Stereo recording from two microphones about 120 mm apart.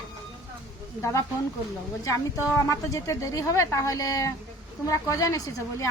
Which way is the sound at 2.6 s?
25° left (ahead or behind).